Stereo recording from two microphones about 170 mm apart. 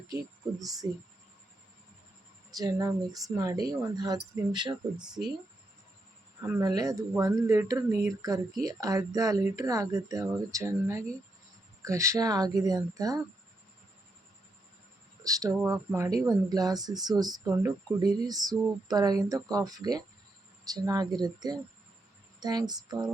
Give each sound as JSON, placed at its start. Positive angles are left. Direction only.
{"t": 0.8, "sound": "speech", "side_deg": -20}
{"t": 2.6, "sound": "speech", "side_deg": -20}
{"t": 4.9, "sound": "speech", "side_deg": -5}
{"t": 6.4, "sound": "speech", "side_deg": -20}
{"t": 15.2, "sound": "speech", "side_deg": -20}
{"t": 15.5, "sound": "speech", "side_deg": -10}
{"t": 16.0, "sound": "speech", "side_deg": -20}